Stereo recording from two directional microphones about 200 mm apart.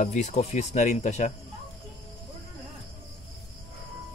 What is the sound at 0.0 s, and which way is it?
Speech, 35° left (ahead or behind).